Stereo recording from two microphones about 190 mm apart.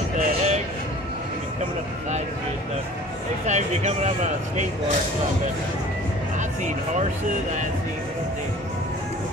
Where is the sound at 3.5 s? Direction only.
35° right (ahead or behind).